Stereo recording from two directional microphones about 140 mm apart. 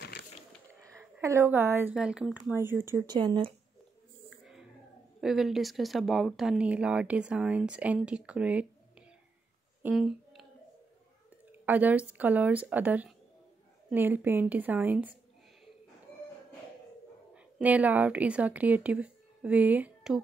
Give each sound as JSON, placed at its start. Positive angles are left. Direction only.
{"t": 0.9, "sound": "a woman's voice", "side_deg": -20}
{"t": 2.6, "sound": "speech", "side_deg": -15}
{"t": 3.1, "sound": "speech", "side_deg": -30}
{"t": 5.2, "sound": "speech", "side_deg": -5}
{"t": 11.6, "sound": "speech", "side_deg": -10}
{"t": 17.6, "sound": "speech", "side_deg": -10}